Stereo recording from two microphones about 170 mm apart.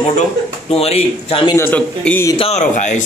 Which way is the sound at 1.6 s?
10° left (ahead or behind).